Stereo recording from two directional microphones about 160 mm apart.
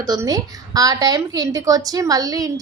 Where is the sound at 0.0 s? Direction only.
25° right (ahead or behind).